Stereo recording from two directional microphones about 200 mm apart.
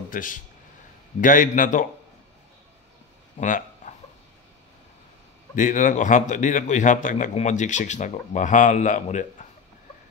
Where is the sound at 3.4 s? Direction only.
40° left (ahead or behind).